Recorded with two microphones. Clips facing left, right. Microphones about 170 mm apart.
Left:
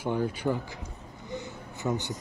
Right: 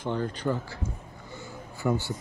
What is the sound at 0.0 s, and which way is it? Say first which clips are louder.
Speech: left 1 dB; 10° left (ahead or behind).